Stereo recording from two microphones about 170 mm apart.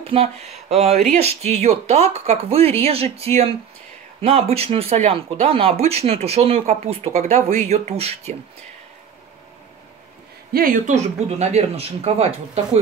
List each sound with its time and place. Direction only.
0.0 s a sound: 35° right (ahead or behind)
1.1 s speech: 40° right (ahead or behind)
10.5 s speech: 55° right (ahead or behind); by 12.3 s 40° right (ahead or behind)